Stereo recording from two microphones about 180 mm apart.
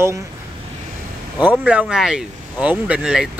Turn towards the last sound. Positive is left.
turn(degrees=-5)  # may be behind; listen again after turning